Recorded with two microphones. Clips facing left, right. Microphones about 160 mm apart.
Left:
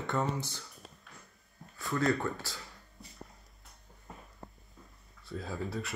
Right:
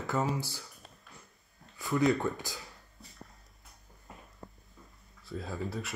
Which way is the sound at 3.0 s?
Centre (ahead or behind).